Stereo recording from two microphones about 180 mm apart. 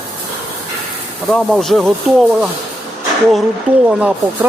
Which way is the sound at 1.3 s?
Centre (ahead or behind).